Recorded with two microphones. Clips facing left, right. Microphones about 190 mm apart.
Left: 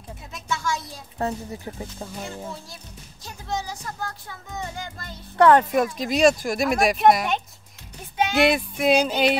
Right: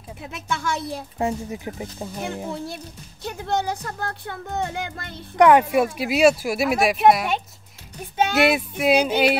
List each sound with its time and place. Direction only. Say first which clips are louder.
0.2 s speech: right 2 dB; 60° right (ahead or behind)
1.1 s speech: right 1 dB; 15° right (ahead or behind)
2.2 s speech: right 6 dB; 60° right (ahead or behind)
5.4 s speech: right 1 dB; 10° right (ahead or behind)